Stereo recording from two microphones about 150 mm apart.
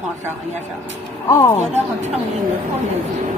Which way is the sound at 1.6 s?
45° right (ahead or behind).